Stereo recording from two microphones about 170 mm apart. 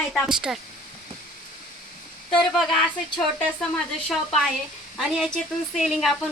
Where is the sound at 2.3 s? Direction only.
Centre (ahead or behind).